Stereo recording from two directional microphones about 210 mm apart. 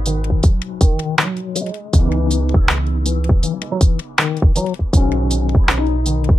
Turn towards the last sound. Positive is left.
turn(degrees=0)  # may be behind; listen again after turning